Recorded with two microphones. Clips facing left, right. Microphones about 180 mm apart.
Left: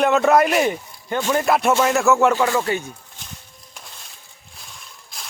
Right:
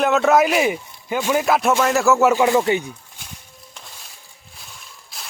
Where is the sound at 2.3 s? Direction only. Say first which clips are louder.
Right 3 dB; 20° right (ahead or behind).